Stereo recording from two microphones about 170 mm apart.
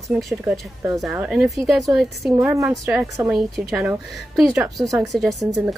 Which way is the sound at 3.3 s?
Centre (ahead or behind).